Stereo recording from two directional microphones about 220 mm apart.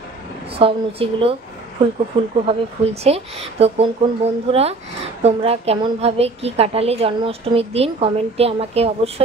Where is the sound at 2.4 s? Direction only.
30° right (ahead or behind).